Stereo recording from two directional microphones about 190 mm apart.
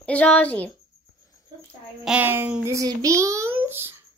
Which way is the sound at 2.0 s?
10° right (ahead or behind).